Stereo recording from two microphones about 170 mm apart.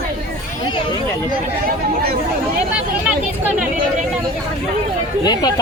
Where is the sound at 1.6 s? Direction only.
65° right (ahead or behind).